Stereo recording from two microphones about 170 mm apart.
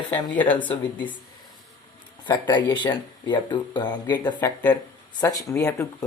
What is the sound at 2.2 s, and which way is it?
Speech, 25° left (ahead or behind).